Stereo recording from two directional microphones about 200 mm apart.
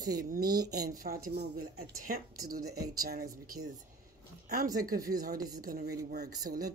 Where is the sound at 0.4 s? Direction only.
20° right (ahead or behind).